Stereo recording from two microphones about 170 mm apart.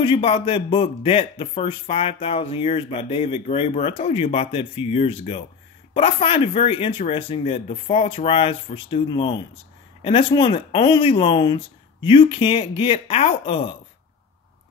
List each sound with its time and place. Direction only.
0.0 s a man's voice: 30° left (ahead or behind)